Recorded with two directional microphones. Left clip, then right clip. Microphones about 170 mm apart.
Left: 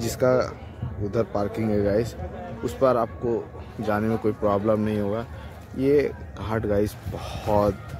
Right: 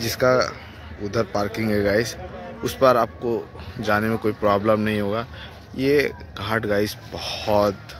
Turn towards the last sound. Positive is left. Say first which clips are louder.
# right 3 dB
turn(degrees=5)  # may be behind; listen again after turning